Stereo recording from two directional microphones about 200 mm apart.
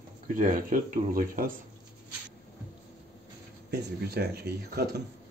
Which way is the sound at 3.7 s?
50° right (ahead or behind).